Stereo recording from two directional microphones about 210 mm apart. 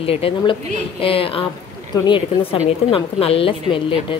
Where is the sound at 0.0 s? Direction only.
25° left (ahead or behind).